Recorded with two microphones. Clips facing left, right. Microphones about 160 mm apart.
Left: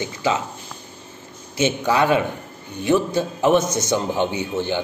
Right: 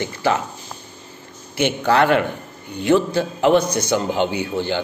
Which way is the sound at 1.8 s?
15° left (ahead or behind).